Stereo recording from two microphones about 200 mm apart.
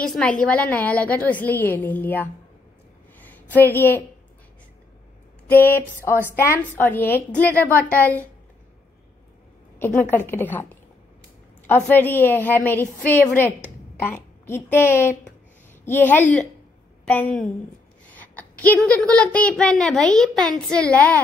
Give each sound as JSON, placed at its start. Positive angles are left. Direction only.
{"t": 0.0, "sound": "a woman's voice", "side_deg": 5}
{"t": 3.3, "sound": "a woman's voice", "side_deg": 10}
{"t": 5.5, "sound": "a woman's voice", "side_deg": 10}
{"t": 9.8, "sound": "a woman's voice", "side_deg": 10}